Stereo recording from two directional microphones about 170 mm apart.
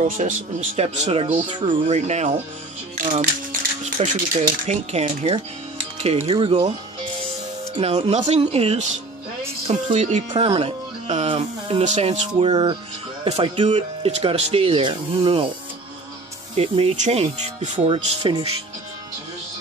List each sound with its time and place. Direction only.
0.0 s speech: 45° right (ahead or behind)
7.7 s speech: 35° right (ahead or behind)
10.3 s speech: 35° right (ahead or behind)
16.5 s speech: 35° right (ahead or behind)